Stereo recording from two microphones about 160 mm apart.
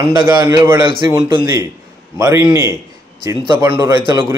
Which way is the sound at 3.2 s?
30° right (ahead or behind).